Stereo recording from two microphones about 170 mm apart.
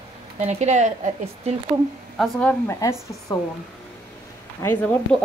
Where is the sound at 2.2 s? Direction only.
5° left (ahead or behind).